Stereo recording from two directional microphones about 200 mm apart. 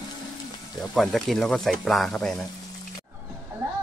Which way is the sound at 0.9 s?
Centre (ahead or behind).